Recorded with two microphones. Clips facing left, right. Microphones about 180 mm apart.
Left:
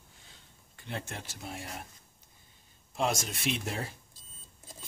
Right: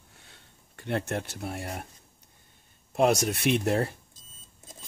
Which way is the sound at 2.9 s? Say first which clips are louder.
Right 8 dB; 65° right (ahead or behind).